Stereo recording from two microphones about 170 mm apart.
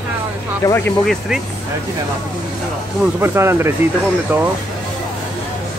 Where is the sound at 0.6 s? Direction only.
15° left (ahead or behind).